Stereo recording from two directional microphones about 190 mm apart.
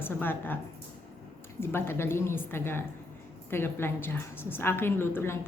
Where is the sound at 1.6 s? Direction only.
10° left (ahead or behind).